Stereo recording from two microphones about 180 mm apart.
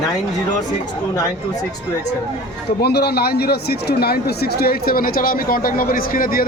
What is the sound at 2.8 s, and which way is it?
Speech, 65° left (ahead or behind).